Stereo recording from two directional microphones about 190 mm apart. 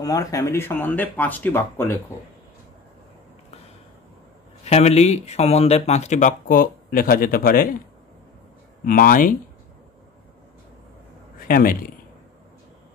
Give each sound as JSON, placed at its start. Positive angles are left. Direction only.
{"t": 0.0, "sound": "speech", "side_deg": 20}
{"t": 4.6, "sound": "speech", "side_deg": 35}
{"t": 8.8, "sound": "speech", "side_deg": 45}
{"t": 11.3, "sound": "speech", "side_deg": 50}